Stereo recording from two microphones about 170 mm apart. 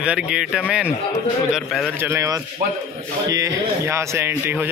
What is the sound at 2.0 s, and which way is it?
Speech, 15° right (ahead or behind).